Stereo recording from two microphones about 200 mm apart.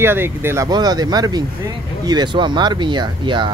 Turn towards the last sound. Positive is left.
turn(degrees=-25)  # may be behind; listen again after turning